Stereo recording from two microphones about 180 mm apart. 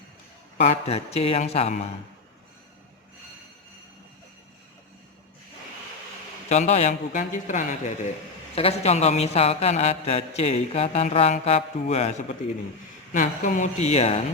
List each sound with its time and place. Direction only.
0.6 s a man's voice: 35° left (ahead or behind)
6.5 s a man's voice: 40° left (ahead or behind)